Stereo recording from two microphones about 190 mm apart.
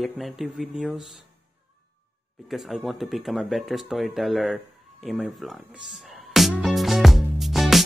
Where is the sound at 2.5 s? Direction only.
Centre (ahead or behind).